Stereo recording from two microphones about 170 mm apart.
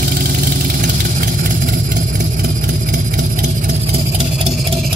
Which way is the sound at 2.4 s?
55° right (ahead or behind).